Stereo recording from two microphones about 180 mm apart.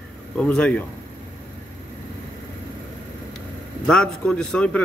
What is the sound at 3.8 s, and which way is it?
A man's voice, 5° left (ahead or behind).